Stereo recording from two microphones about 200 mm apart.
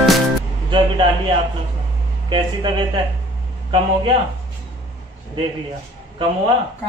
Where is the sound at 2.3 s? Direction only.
25° right (ahead or behind).